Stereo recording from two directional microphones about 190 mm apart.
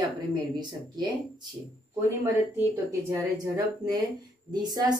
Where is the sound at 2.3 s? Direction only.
10° right (ahead or behind).